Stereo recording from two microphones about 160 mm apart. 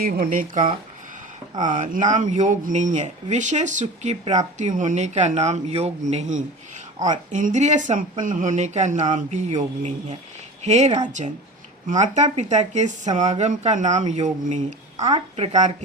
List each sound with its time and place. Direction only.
0.0 s speech: 65° right (ahead or behind)
1.6 s speech: 55° right (ahead or behind)
14.9 s a woman's voice: 25° right (ahead or behind)